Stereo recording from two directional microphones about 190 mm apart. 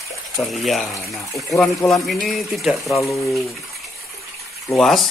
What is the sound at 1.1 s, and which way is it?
Speech, 15° left (ahead or behind).